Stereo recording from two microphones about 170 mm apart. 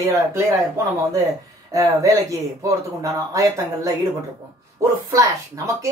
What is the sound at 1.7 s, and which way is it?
Speech, 20° right (ahead or behind).